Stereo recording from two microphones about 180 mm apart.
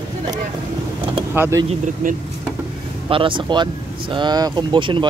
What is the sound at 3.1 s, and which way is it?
Speech, 30° right (ahead or behind).